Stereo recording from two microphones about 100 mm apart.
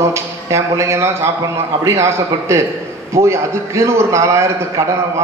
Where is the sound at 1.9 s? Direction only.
30° right (ahead or behind).